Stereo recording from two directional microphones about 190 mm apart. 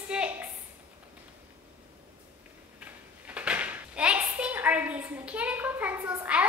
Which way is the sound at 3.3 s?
5° right (ahead or behind).